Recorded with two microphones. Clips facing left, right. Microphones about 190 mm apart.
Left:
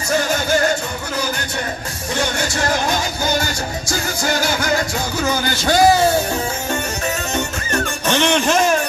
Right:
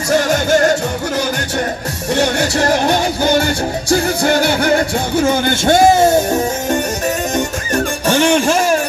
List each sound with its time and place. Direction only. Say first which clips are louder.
3.3 s music: right 7 dB; 30° right (ahead or behind)
4.7 s speech: right 6 dB; 30° right (ahead or behind)
7.3 s music: right 4 dB; 15° right (ahead or behind)